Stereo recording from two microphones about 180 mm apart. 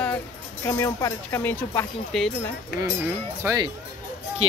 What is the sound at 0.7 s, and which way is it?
Speech, 15° left (ahead or behind).